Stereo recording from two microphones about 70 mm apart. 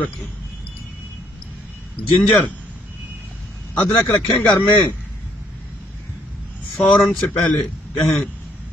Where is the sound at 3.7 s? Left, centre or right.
Left.